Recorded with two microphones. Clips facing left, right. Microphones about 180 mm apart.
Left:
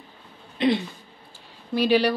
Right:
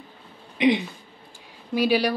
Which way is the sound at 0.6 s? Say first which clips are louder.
Right 2 dB; 15° right (ahead or behind).